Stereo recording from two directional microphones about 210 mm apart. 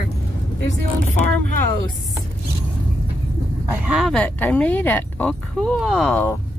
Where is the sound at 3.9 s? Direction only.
Centre (ahead or behind).